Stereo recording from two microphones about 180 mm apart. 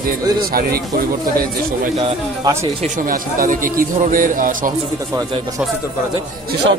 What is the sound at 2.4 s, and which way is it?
Speech, 15° right (ahead or behind).